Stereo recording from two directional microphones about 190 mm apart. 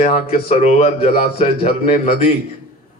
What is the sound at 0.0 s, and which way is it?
A man's voice, 30° left (ahead or behind).